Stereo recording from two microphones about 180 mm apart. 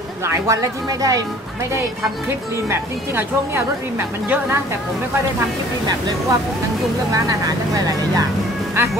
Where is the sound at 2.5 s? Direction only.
15° right (ahead or behind).